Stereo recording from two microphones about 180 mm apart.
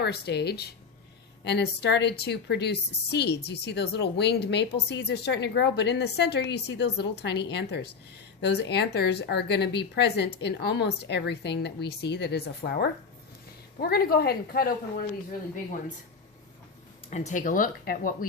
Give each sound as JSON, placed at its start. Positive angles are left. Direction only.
{"t": 0.0, "sound": "a woman's voice", "side_deg": 65}
{"t": 17.1, "sound": "speech", "side_deg": 40}